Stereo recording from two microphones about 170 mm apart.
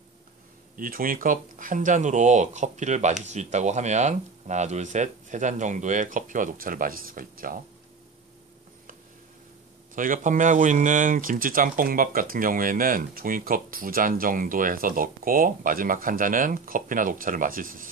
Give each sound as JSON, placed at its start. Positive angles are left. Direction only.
{"t": 0.7, "sound": "speech", "side_deg": -55}
{"t": 9.9, "sound": "speech", "side_deg": -50}